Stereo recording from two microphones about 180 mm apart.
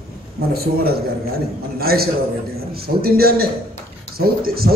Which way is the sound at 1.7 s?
55° right (ahead or behind).